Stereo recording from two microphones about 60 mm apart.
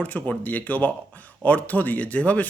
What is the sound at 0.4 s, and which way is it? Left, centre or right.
A man's voice, left.